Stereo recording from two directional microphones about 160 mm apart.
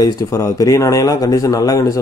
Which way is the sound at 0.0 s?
20° left (ahead or behind).